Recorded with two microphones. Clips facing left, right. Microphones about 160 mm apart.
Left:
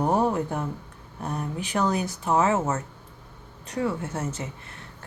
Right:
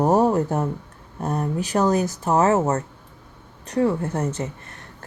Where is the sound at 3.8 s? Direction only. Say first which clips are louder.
Right 6 dB; 35° right (ahead or behind).